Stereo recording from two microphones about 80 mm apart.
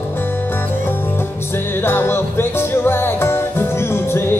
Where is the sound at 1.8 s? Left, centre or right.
Left.